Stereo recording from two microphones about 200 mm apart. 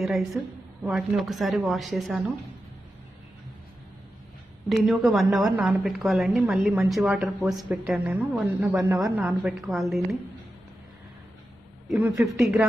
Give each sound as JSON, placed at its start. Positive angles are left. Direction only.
{"t": 0.0, "sound": "a woman's voice", "side_deg": 0}
{"t": 4.6, "sound": "a woman's voice", "side_deg": 0}
{"t": 11.9, "sound": "a woman's voice", "side_deg": -10}